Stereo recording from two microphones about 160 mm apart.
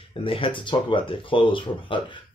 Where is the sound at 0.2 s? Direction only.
35° left (ahead or behind).